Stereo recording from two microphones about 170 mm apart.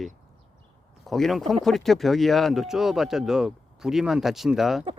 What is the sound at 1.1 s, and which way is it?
Speech, centre (ahead or behind).